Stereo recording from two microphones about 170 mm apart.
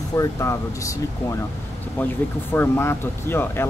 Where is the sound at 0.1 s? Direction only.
20° left (ahead or behind).